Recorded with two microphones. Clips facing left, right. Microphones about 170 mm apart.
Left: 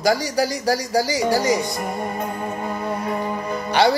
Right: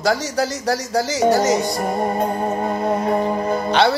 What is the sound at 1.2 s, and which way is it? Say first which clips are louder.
Speech: right 6 dB; 70° right (ahead or behind).